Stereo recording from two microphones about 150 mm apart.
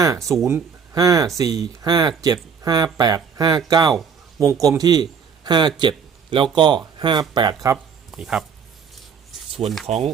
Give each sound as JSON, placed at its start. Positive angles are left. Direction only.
{"t": 0.4, "sound": "speech", "side_deg": -20}
{"t": 8.1, "sound": "speech", "side_deg": -5}
{"t": 9.8, "sound": "speech", "side_deg": -45}